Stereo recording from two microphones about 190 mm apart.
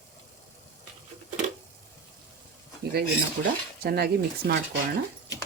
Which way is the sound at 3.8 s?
55° right (ahead or behind).